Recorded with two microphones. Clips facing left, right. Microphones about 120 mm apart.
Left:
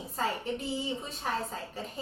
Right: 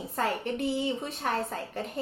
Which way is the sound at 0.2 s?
65° right (ahead or behind).